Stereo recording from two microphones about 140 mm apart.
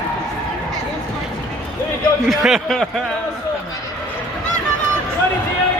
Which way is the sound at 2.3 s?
Centre (ahead or behind).